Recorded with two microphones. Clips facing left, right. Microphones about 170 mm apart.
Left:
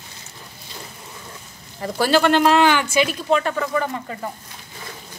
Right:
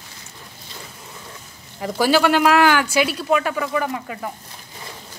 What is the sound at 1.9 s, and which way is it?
A woman's voice, 10° right (ahead or behind).